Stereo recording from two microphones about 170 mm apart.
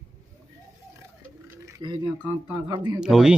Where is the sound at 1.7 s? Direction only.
25° right (ahead or behind).